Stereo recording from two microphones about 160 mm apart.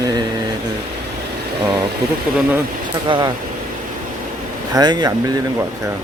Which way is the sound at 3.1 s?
30° right (ahead or behind).